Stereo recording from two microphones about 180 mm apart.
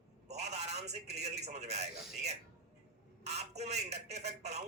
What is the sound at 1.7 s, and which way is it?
Speech, 40° right (ahead or behind).